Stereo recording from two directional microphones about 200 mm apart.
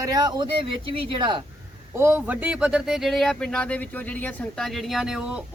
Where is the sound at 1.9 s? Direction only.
10° right (ahead or behind).